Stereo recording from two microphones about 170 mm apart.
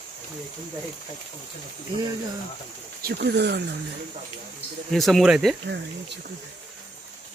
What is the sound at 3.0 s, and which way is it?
Speech, 75° right (ahead or behind).